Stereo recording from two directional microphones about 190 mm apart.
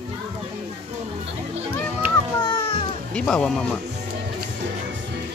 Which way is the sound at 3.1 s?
5° left (ahead or behind).